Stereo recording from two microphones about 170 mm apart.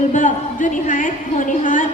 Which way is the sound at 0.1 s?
45° left (ahead or behind).